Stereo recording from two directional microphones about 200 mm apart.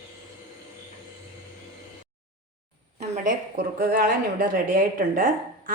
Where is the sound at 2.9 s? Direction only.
40° right (ahead or behind).